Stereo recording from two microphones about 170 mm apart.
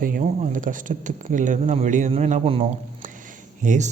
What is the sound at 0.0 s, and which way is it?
Speech, 50° right (ahead or behind).